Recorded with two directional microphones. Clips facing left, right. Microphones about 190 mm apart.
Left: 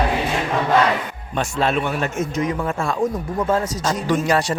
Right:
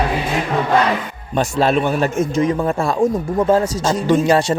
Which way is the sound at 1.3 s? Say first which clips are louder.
Right 5 dB; 35° right (ahead or behind).